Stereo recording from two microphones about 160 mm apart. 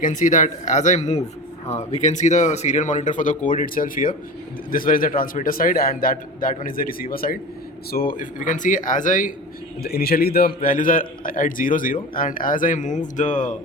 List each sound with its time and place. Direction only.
0.0 s a man's voice: 55° left (ahead or behind)
9.8 s a man's voice: 75° left (ahead or behind); by 13.6 s 50° left (ahead or behind)